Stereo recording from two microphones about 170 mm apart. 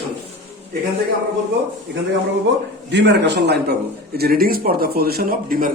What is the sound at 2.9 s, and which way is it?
Speech, 90° right.